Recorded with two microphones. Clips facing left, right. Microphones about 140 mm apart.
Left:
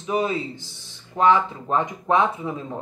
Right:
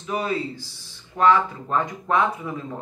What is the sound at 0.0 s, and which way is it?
A man's voice, 20° left (ahead or behind).